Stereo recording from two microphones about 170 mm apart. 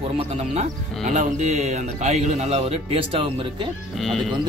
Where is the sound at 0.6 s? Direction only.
45° right (ahead or behind).